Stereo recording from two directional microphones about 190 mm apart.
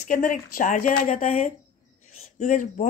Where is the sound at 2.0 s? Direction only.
40° left (ahead or behind).